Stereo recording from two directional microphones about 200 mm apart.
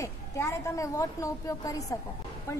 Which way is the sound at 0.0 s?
15° left (ahead or behind).